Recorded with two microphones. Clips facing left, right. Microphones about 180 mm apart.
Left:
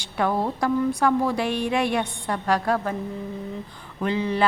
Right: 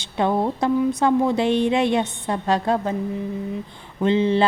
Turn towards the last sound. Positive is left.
turn(degrees=-25)  # may be behind; listen again after turning